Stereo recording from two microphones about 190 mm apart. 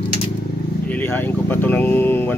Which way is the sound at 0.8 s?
10° left (ahead or behind).